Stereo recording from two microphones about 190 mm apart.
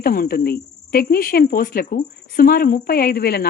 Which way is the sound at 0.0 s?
50° left (ahead or behind).